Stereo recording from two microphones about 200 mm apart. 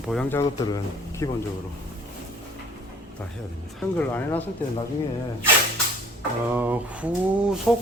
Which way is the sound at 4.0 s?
10° left (ahead or behind).